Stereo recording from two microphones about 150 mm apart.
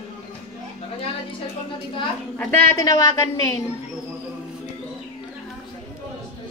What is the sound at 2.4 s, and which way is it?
A woman's voice, 20° left (ahead or behind).